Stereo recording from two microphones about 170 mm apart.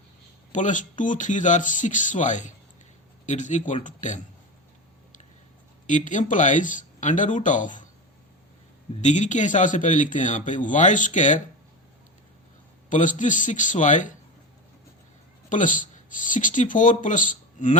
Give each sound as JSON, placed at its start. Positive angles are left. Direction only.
{"t": 0.5, "sound": "a man's voice", "side_deg": 45}
{"t": 5.9, "sound": "a man's voice", "side_deg": 50}
{"t": 9.0, "sound": "a man's voice", "side_deg": 45}
{"t": 12.9, "sound": "a man's voice", "side_deg": 50}
{"t": 15.4, "sound": "speech", "side_deg": 50}